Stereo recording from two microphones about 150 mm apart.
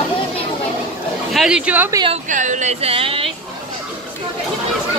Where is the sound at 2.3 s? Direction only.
55° right (ahead or behind); by 3.3 s 40° right (ahead or behind).